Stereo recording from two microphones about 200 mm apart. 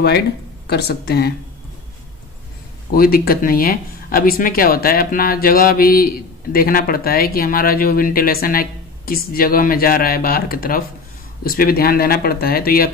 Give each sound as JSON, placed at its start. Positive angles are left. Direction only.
{"t": 0.7, "sound": "speech", "side_deg": 55}
{"t": 2.9, "sound": "speech", "side_deg": 50}